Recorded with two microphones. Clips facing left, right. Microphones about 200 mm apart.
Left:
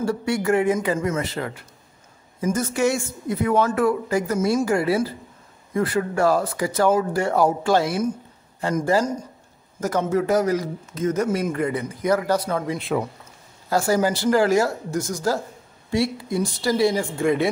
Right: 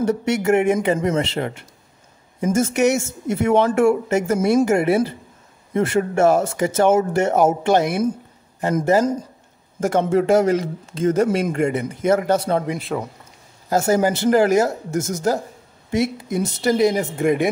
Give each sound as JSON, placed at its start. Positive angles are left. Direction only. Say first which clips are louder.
{"t": 0.0, "sound": "speech", "louder": "right 3 dB", "side_deg": -20}
{"t": 12.7, "sound": "a man's voice", "louder": "left 1 dB", "side_deg": 0}
{"t": 13.7, "sound": "speech", "louder": "right 3 dB", "side_deg": -20}